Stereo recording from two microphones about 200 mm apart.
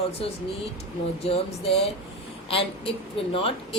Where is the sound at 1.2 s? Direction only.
30° left (ahead or behind).